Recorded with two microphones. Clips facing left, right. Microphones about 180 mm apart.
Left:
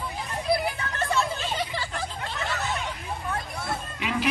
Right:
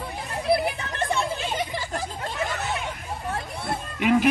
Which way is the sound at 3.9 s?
50° right (ahead or behind).